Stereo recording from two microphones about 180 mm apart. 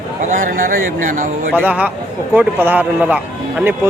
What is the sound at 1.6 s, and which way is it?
Speech, 10° right (ahead or behind).